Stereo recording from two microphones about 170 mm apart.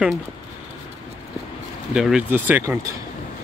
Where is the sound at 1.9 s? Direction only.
5° right (ahead or behind).